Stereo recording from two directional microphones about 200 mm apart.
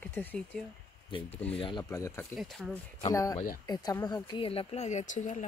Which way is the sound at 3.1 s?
15° left (ahead or behind).